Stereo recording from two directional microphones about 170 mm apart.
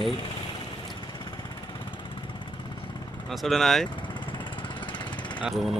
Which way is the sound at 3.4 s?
Centre (ahead or behind).